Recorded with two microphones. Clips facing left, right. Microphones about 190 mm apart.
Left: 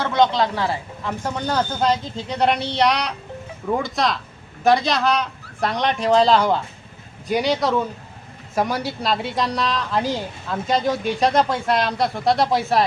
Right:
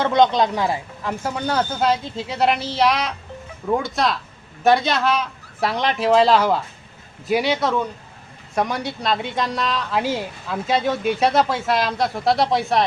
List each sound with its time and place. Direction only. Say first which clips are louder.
0.0 s a woman's voice: right 2 dB; 20° right (ahead or behind); by 12.8 s centre (ahead or behind)